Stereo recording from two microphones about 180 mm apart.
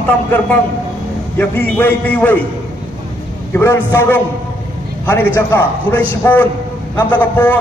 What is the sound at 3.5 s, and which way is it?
A man's voice, 15° left (ahead or behind).